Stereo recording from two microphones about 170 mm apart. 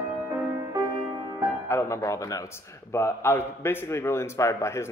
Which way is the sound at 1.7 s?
15° left (ahead or behind).